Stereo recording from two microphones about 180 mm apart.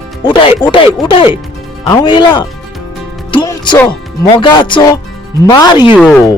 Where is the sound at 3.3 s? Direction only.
25° left (ahead or behind).